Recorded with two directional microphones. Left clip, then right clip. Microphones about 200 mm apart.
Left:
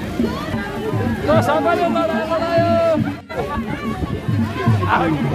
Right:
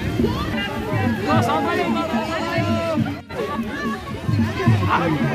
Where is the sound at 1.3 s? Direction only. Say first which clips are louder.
Left 5 dB; 55° left (ahead or behind).